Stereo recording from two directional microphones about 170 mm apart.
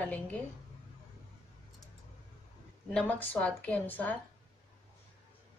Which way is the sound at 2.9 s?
5° left (ahead or behind).